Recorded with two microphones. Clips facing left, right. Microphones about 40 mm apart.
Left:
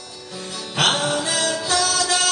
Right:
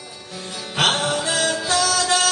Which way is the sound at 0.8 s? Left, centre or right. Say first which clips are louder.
Even; centre.